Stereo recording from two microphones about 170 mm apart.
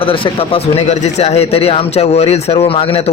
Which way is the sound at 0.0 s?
30° left (ahead or behind).